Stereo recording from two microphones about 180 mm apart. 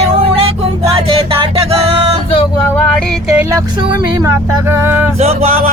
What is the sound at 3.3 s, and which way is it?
Music, 15° right (ahead or behind).